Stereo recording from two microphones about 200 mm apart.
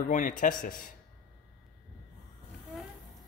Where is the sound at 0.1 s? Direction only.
40° left (ahead or behind).